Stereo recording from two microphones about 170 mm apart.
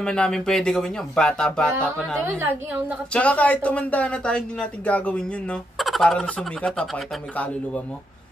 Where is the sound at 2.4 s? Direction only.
10° right (ahead or behind).